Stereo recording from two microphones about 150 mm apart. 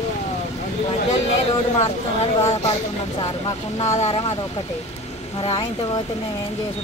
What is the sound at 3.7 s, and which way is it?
Speech, 50° left (ahead or behind).